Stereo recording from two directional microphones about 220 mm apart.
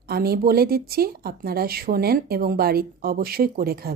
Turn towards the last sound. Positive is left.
turn(degrees=-45)  # may be behind; listen again after turning